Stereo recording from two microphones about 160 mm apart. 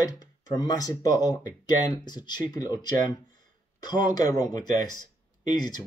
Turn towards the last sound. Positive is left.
turn(degrees=25)  # may be behind; listen again after turning